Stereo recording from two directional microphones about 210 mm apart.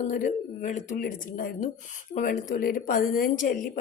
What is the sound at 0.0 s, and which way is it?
A woman's voice, 35° left (ahead or behind).